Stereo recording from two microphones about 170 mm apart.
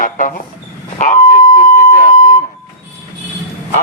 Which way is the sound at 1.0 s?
50° left (ahead or behind).